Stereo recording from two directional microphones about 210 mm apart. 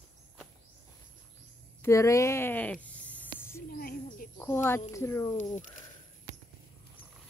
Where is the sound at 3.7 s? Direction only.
45° left (ahead or behind).